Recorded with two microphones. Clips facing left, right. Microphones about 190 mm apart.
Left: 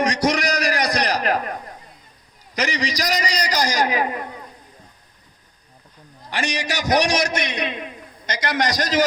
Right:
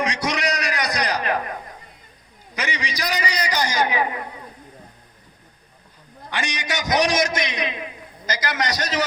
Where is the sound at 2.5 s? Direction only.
40° left (ahead or behind).